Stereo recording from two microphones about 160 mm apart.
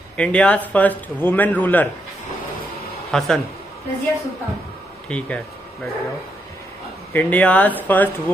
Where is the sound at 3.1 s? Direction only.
Centre (ahead or behind).